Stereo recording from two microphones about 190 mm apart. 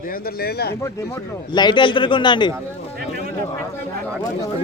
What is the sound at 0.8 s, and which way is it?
Speech, 20° left (ahead or behind).